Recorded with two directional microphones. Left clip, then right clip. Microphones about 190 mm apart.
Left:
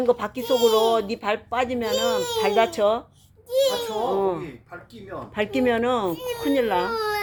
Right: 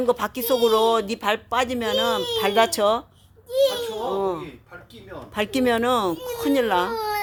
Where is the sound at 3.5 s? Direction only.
55° left (ahead or behind).